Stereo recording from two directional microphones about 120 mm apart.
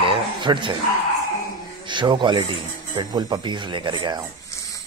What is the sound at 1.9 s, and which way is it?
Speech, 40° right (ahead or behind).